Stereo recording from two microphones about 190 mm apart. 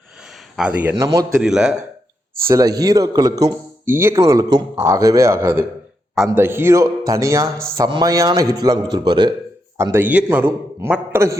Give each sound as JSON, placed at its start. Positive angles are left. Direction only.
{"t": 0.5, "sound": "a man's voice", "side_deg": -5}
{"t": 1.4, "sound": "a man's voice", "side_deg": -5}
{"t": 2.5, "sound": "a man's voice", "side_deg": -20}